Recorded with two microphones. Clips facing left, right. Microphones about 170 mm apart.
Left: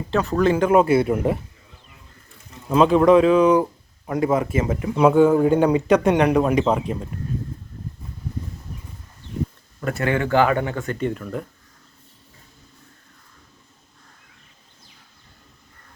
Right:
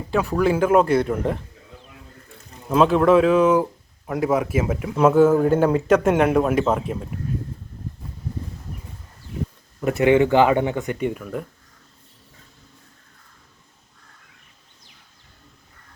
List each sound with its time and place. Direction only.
0.1 s speech: 10° right (ahead or behind); by 1.4 s 10° left (ahead or behind)
2.6 s speech: centre (ahead or behind)
9.8 s speech: 20° right (ahead or behind)